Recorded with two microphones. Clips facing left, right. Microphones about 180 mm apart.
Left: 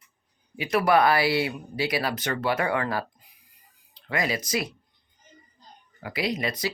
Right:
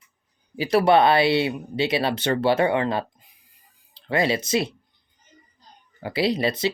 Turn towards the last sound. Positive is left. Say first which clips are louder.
# right 6 dB
turn(degrees=-25)  # may be behind; listen again after turning